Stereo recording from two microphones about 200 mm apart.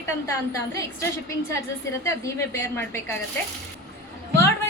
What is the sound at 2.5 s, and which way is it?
Speech, 10° left (ahead or behind).